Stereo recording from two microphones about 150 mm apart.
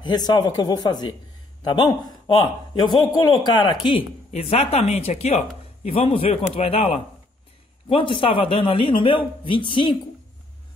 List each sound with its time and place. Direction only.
0.1 s a man's voice: 25° left (ahead or behind)
4.3 s speech: 45° left (ahead or behind)